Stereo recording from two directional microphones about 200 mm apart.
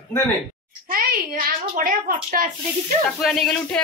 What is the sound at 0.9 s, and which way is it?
A woman's voice, 45° right (ahead or behind).